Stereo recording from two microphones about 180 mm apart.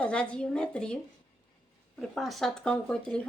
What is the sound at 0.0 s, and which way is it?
Speech, 5° left (ahead or behind).